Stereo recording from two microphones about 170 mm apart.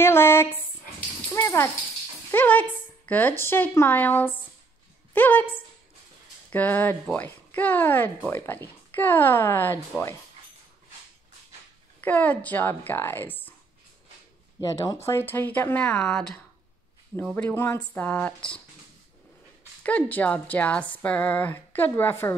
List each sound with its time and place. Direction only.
0.0 s a sound: 15° left (ahead or behind)
1.3 s a woman's voice: 15° left (ahead or behind)
12.0 s a woman's voice: 10° left (ahead or behind)
14.6 s a woman's voice: 20° left (ahead or behind)
19.8 s a woman's voice: 10° left (ahead or behind)